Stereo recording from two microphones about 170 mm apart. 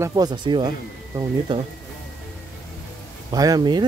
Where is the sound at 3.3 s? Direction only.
20° right (ahead or behind).